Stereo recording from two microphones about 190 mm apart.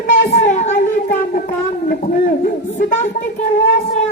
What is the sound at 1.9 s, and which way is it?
A man's voice, 50° left (ahead or behind).